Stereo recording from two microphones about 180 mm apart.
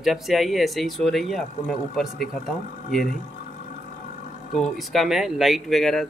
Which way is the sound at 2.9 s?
50° left (ahead or behind).